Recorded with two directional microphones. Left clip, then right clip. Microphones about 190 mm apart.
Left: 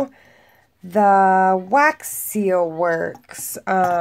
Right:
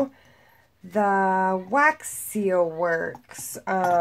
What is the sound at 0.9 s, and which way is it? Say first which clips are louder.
A woman's voice: left 8 dB; 50° left (ahead or behind).